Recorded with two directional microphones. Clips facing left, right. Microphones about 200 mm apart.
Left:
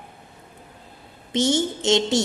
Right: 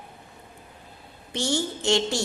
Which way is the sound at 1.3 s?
20° left (ahead or behind).